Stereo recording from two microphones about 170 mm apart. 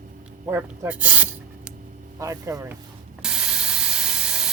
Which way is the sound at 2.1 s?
20° right (ahead or behind).